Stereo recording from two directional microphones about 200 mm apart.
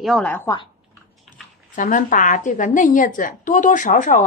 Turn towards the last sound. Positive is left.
turn(degrees=40)  # may be behind; listen again after turning